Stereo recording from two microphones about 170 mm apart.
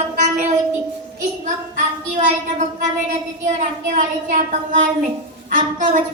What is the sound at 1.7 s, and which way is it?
A woman's voice, 45° right (ahead or behind).